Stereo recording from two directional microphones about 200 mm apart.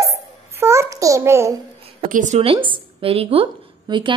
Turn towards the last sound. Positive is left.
turn(degrees=-25)  # may be behind; listen again after turning